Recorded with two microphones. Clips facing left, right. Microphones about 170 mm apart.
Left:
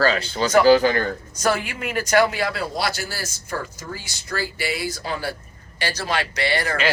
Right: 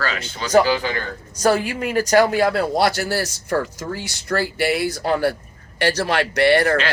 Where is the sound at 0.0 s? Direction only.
35° left (ahead or behind).